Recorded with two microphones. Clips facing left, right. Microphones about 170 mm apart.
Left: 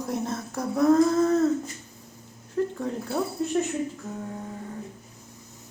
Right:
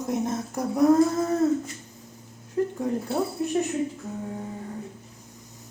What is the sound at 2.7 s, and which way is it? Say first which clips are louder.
Speech: right 2 dB; 15° right (ahead or behind).